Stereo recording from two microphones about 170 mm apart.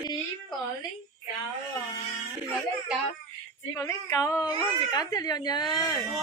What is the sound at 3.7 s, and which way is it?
A woman's voice, 15° left (ahead or behind).